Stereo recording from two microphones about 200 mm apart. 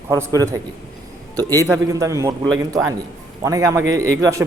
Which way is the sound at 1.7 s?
15° right (ahead or behind).